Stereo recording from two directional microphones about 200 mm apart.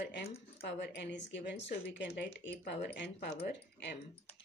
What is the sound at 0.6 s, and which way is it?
Speech, 60° left (ahead or behind).